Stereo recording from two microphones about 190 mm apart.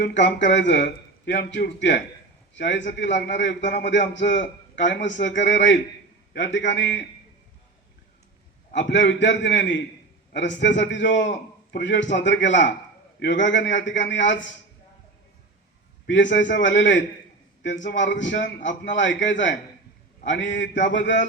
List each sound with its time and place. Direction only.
0.0 s a man's voice: 70° left (ahead or behind)
8.7 s a man's voice: 70° left (ahead or behind)
16.0 s a man's voice: 75° left (ahead or behind)
20.6 s mantra: 45° left (ahead or behind)
20.9 s a man's voice: 70° left (ahead or behind)